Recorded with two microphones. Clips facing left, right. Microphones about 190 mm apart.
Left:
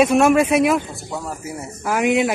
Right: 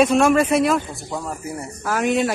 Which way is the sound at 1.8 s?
15° left (ahead or behind).